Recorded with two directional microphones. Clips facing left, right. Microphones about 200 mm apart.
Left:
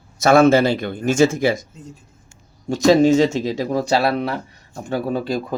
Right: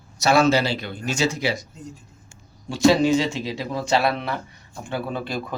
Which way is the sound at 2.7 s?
45° left (ahead or behind).